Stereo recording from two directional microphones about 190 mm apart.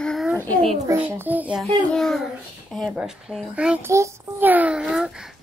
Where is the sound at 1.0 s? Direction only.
10° right (ahead or behind).